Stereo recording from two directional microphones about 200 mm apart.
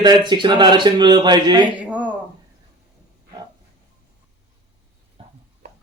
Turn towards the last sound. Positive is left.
turn(degrees=-30)  # may be behind; listen again after turning